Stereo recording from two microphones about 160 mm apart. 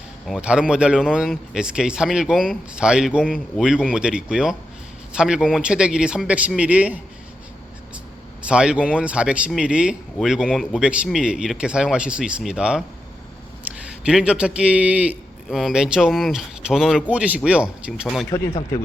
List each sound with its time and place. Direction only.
0.3 s a man's voice: 5° right (ahead or behind)
8.4 s a man's voice: 5° right (ahead or behind)
14.0 s a man's voice: 5° right (ahead or behind)
18.3 s speech: 15° left (ahead or behind)